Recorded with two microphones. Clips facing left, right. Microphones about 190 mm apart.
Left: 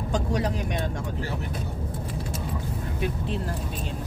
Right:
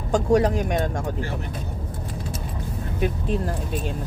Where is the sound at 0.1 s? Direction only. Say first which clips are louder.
Right 9 dB; 50° right (ahead or behind).